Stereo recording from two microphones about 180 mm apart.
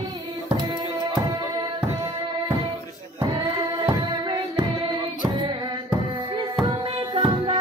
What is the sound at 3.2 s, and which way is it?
Music, 25° right (ahead or behind).